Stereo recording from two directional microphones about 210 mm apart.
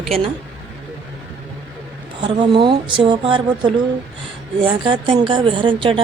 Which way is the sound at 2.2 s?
25° right (ahead or behind).